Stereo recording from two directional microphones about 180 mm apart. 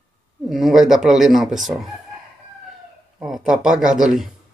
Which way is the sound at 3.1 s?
Centre (ahead or behind).